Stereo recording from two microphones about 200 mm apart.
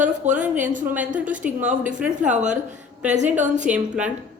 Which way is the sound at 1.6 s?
5° right (ahead or behind).